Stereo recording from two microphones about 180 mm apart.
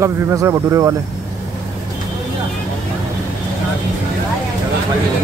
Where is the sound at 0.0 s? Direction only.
15° right (ahead or behind).